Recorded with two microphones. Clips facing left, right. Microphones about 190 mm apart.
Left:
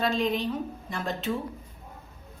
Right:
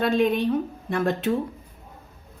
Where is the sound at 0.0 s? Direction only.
60° right (ahead or behind).